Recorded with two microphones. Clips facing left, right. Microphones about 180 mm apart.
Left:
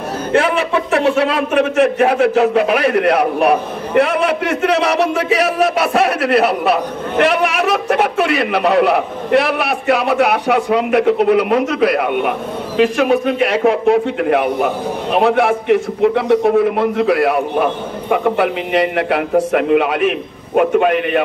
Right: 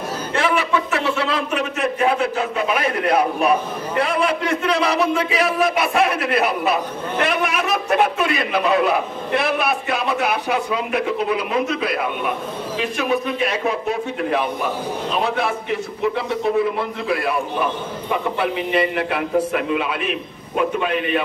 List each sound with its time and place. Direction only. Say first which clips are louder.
0.4 s a man's voice: left 3 dB; 35° left (ahead or behind)
0.9 s a man's voice: left 7 dB; 50° left (ahead or behind)